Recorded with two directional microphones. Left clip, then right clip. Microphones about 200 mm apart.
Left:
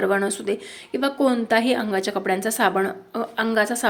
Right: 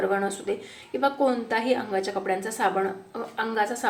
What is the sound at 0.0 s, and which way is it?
Speech, 50° left (ahead or behind).